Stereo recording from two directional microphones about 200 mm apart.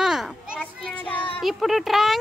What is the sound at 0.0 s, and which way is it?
Children playing, centre (ahead or behind).